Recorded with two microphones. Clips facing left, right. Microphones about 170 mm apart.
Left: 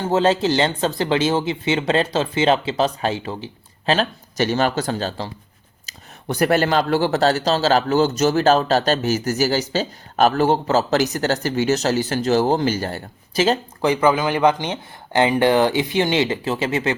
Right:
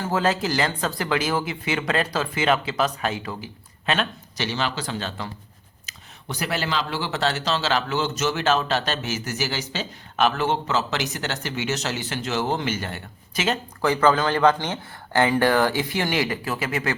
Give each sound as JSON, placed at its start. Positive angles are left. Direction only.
{"t": 0.0, "sound": "speech", "side_deg": 25}
{"t": 4.4, "sound": "speech", "side_deg": 45}
{"t": 5.9, "sound": "a sound", "side_deg": 35}
{"t": 6.2, "sound": "a man's voice", "side_deg": 50}
{"t": 13.8, "sound": "speech", "side_deg": 15}